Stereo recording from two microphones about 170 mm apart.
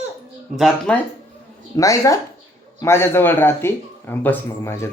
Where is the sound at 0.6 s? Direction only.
Centre (ahead or behind).